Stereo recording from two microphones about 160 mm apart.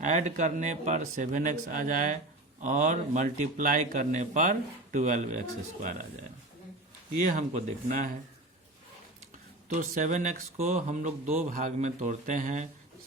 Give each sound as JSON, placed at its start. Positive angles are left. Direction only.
{"t": 0.0, "sound": "speech", "side_deg": -50}
{"t": 7.2, "sound": "speech", "side_deg": -50}
{"t": 9.6, "sound": "speech", "side_deg": -50}